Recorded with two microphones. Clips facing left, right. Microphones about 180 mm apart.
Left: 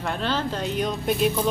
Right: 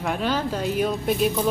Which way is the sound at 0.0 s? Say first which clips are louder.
Right 2 dB; 10° right (ahead or behind).